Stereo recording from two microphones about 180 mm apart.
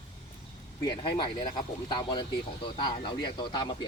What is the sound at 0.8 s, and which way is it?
Speech, 25° left (ahead or behind).